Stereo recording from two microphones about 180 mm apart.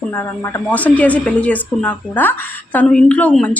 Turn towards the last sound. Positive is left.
turn(degrees=5)  # may be behind; listen again after turning